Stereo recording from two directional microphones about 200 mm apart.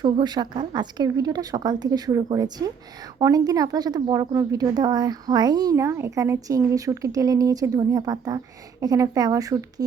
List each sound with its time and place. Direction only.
0.0 s a woman's voice: 20° right (ahead or behind)